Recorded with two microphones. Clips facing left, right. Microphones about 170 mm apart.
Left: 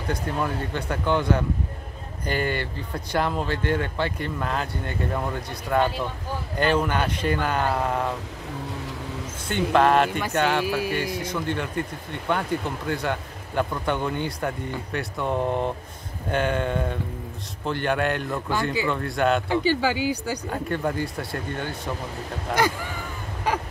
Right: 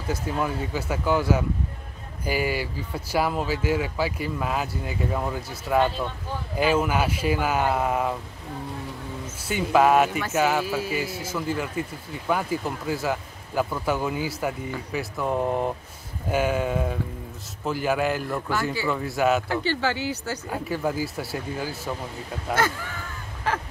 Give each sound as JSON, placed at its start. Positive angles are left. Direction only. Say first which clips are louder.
{"t": 0.1, "sound": "speech", "louder": "even", "side_deg": -5}
{"t": 9.5, "sound": "speech", "louder": "even", "side_deg": -5}
{"t": 10.6, "sound": "speech", "louder": "left 2 dB", "side_deg": 10}
{"t": 11.1, "sound": "speech", "louder": "left 1 dB", "side_deg": -5}
{"t": 19.5, "sound": "speech", "louder": "left 3 dB", "side_deg": 10}
{"t": 20.4, "sound": "speech", "louder": "even", "side_deg": -5}
{"t": 23.5, "sound": "speech", "louder": "left 2 dB", "side_deg": 15}